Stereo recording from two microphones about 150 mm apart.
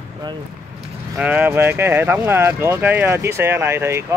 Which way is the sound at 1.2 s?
10° right (ahead or behind).